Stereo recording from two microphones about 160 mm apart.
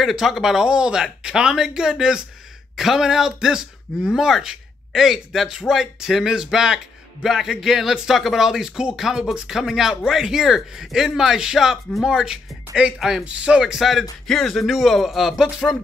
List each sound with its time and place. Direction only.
0.0 s a man's voice: centre (ahead or behind)